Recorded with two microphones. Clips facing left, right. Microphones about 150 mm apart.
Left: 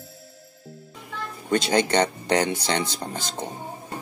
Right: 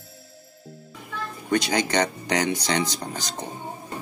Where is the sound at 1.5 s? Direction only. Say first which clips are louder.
Left 2 dB; 25° left (ahead or behind).